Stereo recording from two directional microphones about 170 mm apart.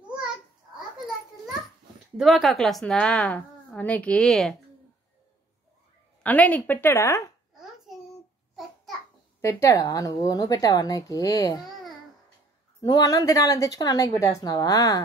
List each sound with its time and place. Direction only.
2.1 s a woman's voice: centre (ahead or behind)
6.2 s a woman's voice: 10° left (ahead or behind)
7.5 s hands: centre (ahead or behind)
9.4 s a woman's voice: 15° left (ahead or behind)
12.8 s a woman's voice: 20° left (ahead or behind)